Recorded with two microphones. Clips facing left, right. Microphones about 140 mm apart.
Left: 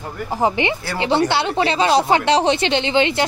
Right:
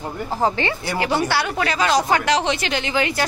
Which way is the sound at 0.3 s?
15° left (ahead or behind).